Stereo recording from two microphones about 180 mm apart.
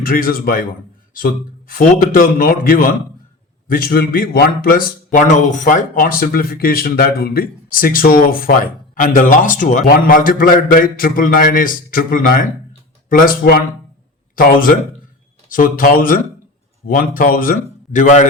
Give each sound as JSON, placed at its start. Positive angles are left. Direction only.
{"t": 0.0, "sound": "speech", "side_deg": 55}